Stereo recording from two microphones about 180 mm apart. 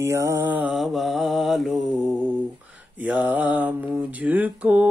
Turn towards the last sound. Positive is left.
turn(degrees=-10)  # may be behind; listen again after turning